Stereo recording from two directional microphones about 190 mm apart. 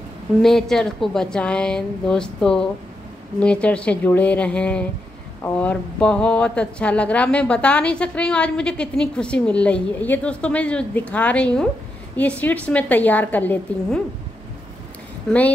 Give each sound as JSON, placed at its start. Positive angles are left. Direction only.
{"t": 0.4, "sound": "a woman's voice", "side_deg": 0}